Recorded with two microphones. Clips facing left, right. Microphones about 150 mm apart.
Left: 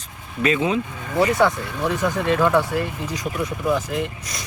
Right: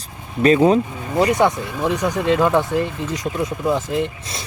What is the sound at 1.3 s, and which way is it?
Speech, 20° right (ahead or behind).